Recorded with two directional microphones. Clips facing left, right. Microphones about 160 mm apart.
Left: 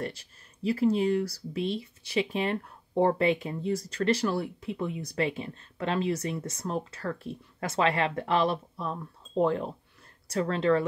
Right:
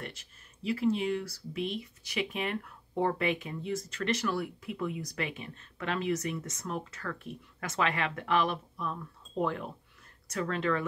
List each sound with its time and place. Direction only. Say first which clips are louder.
0.0 s speech: left 8 dB; 35° left (ahead or behind)